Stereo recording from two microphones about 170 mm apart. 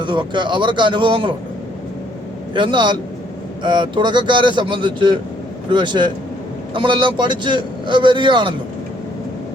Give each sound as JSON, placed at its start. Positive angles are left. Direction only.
{"t": 0.0, "sound": "speech", "side_deg": -30}
{"t": 2.5, "sound": "speech", "side_deg": -30}